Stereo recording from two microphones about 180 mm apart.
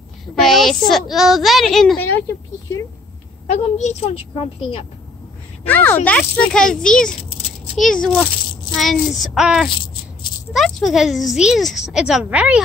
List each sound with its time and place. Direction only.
0.4 s speech: centre (ahead or behind)
3.4 s a woman's voice: 40° left (ahead or behind)
5.7 s speech: 10° left (ahead or behind); by 12.6 s 5° right (ahead or behind)